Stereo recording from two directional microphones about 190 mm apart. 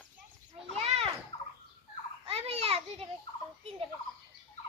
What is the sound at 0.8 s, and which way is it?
Children playing, 35° right (ahead or behind).